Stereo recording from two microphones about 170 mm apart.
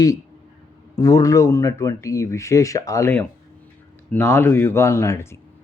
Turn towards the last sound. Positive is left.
turn(degrees=15)  # may be behind; listen again after turning